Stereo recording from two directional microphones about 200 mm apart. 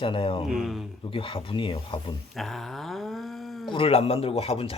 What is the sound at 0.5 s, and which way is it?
Speech, centre (ahead or behind).